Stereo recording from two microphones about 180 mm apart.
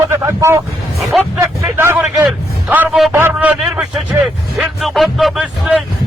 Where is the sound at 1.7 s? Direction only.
15° right (ahead or behind).